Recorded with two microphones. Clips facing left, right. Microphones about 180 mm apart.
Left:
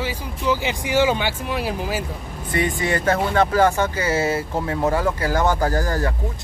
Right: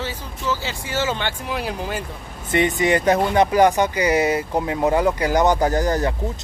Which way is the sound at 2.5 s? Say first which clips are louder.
Right 4 dB; 20° right (ahead or behind).